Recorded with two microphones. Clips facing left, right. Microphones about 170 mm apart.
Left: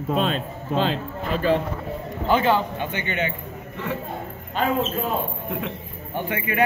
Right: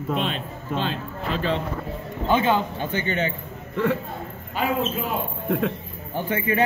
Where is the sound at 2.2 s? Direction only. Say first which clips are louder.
Left 1 dB; 20° right (ahead or behind).